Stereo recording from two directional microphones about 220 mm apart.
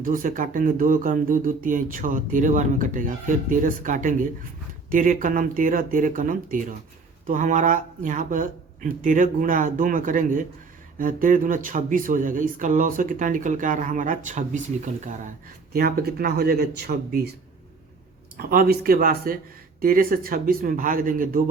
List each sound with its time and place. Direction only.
0.0 s speech: 35° right (ahead or behind)
18.4 s speech: 45° right (ahead or behind)